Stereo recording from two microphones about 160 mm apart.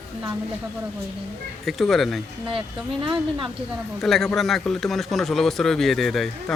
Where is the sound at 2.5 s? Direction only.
35° right (ahead or behind).